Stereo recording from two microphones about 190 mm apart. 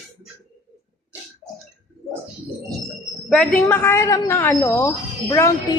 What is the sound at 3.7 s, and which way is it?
A woman's voice, 10° left (ahead or behind).